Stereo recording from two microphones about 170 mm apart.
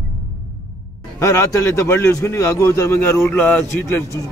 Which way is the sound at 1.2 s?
15° left (ahead or behind).